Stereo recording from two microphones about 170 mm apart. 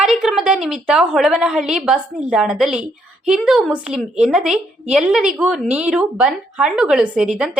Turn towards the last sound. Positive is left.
turn(degrees=-5)  # may be behind; listen again after turning